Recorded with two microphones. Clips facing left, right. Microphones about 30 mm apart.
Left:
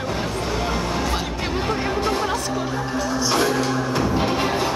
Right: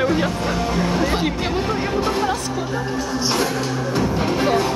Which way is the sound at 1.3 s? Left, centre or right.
Centre.